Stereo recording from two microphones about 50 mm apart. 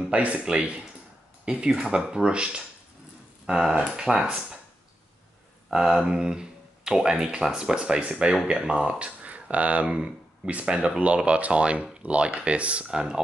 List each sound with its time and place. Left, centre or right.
0.1 s speech: right
5.7 s speech: centre
12.8 s speech: centre